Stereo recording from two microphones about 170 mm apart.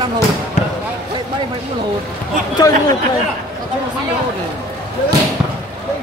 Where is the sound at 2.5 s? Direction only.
25° left (ahead or behind).